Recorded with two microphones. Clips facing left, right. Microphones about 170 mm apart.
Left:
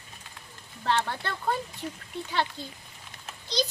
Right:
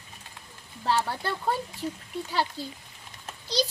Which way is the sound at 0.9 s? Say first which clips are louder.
Right 1 dB; 5° right (ahead or behind).